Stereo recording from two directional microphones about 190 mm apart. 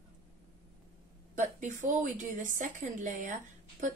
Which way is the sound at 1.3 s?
40° right (ahead or behind).